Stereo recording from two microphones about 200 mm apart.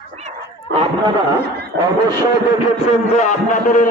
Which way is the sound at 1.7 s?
60° right (ahead or behind).